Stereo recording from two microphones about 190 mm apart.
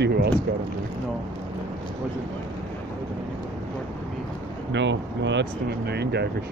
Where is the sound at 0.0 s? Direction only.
55° right (ahead or behind).